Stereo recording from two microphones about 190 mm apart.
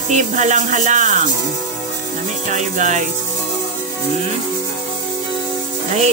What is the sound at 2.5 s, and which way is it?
Speech, 40° right (ahead or behind).